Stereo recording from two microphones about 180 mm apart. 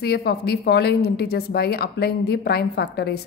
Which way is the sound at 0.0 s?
65° left (ahead or behind).